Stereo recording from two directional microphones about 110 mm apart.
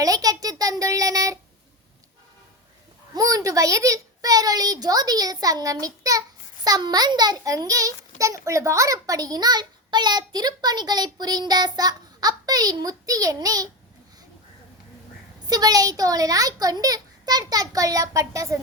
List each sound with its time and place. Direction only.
0.0 s a child's voice: 35° right (ahead or behind)
3.2 s a child's voice: 30° right (ahead or behind)
15.4 s a child's voice: 35° right (ahead or behind)